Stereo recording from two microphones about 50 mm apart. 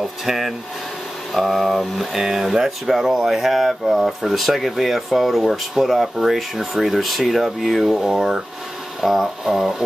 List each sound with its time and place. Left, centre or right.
0.2 s speech: centre
8.0 s speech: centre